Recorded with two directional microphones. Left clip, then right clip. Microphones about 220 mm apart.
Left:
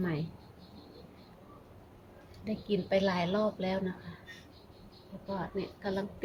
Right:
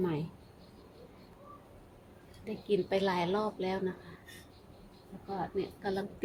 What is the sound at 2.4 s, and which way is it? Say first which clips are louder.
Speech: right 2 dB; 15° right (ahead or behind).